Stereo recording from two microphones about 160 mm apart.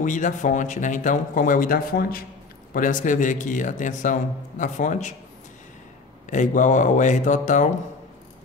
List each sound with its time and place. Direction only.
0.0 s a man's voice: 50° left (ahead or behind)
2.7 s a man's voice: 55° left (ahead or behind)
6.3 s a man's voice: 50° left (ahead or behind)